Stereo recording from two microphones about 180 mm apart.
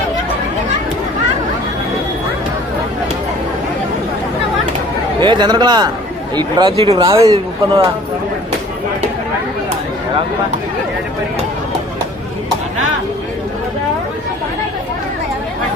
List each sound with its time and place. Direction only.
5.2 s speech: 25° right (ahead or behind)
6.9 s speech: 20° right (ahead or behind)